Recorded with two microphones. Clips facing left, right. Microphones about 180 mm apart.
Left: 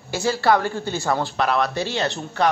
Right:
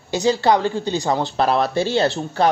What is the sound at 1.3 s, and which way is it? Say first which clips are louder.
Speech: right 3 dB; 30° right (ahead or behind).